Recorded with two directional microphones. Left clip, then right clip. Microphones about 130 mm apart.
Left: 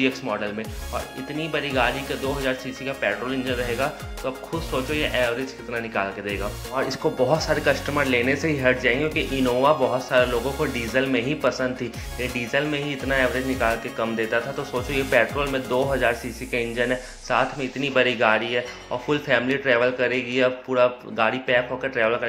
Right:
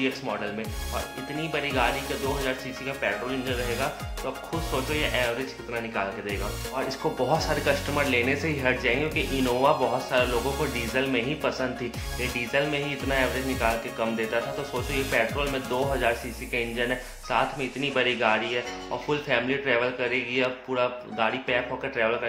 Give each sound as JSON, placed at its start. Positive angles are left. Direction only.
{"t": 1.4, "sound": "speech", "side_deg": 25}